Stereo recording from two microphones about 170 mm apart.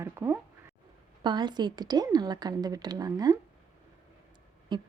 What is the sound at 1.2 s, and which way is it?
A woman's voice, 25° right (ahead or behind).